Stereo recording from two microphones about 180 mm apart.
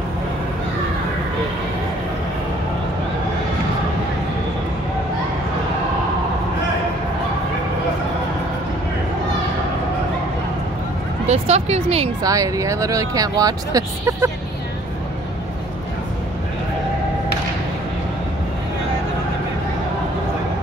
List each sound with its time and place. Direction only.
11.2 s speech: 35° right (ahead or behind)
12.2 s speech: 20° right (ahead or behind)